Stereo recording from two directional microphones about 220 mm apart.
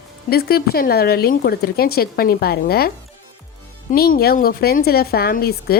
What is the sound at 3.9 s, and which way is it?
Speech, 40° left (ahead or behind).